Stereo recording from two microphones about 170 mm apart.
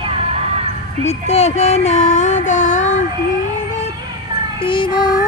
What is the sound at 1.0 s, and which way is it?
Child singing, 40° left (ahead or behind).